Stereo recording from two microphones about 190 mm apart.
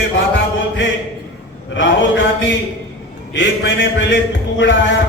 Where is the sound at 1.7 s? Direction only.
75° left (ahead or behind).